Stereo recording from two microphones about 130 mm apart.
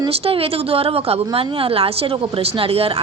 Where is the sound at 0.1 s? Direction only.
50° right (ahead or behind).